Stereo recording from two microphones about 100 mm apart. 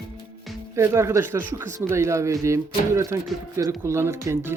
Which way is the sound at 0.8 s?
30° right (ahead or behind).